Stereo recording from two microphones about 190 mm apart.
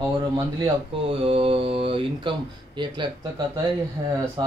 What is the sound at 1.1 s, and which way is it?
A man's voice, 30° right (ahead or behind).